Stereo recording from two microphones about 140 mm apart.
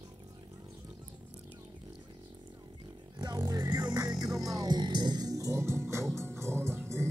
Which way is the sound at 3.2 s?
25° right (ahead or behind).